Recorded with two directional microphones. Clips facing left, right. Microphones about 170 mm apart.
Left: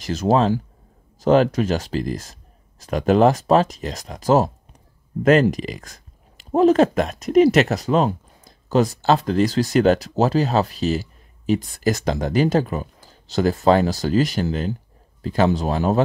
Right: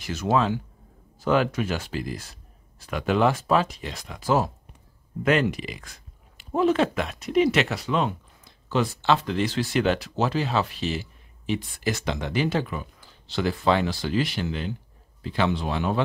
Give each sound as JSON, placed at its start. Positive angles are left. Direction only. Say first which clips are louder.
{"t": 0.0, "sound": "speech", "louder": "left 5 dB", "side_deg": 40}